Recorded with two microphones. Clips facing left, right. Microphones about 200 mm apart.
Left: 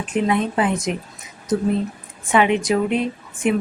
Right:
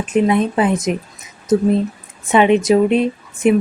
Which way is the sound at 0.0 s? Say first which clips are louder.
Right 5 dB; 20° right (ahead or behind).